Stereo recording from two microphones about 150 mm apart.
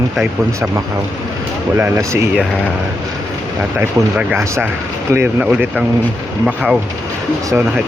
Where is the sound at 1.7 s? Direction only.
15° right (ahead or behind).